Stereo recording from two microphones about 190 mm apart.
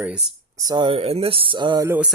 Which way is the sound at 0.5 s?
20° right (ahead or behind).